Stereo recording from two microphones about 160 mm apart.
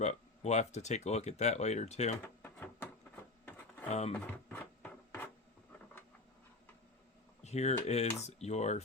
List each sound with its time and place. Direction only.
0.0 s speech: 45° left (ahead or behind)
2.2 s drawer open or close: 10° left (ahead or behind)
4.2 s a sound: 10° left (ahead or behind)
7.4 s speech: 45° left (ahead or behind)